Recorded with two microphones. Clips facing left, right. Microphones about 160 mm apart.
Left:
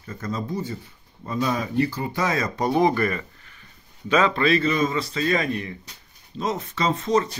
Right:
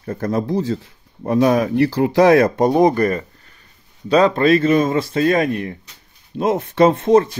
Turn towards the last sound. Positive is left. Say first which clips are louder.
# right 8 dB
turn(degrees=-55)  # may be behind; listen again after turning